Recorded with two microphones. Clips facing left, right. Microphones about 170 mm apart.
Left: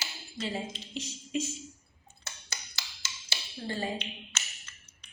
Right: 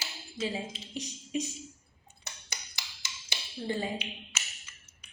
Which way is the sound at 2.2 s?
15° right (ahead or behind).